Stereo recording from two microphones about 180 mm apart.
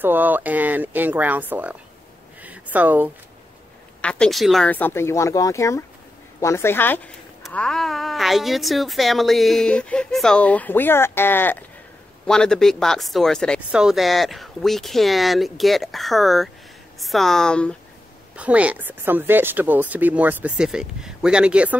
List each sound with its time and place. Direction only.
0.0 s speech: 10° right (ahead or behind)
4.0 s speech: 5° left (ahead or behind)
18.3 s speech: 5° right (ahead or behind)